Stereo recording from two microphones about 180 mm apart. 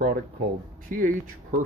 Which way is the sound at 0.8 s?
50° right (ahead or behind).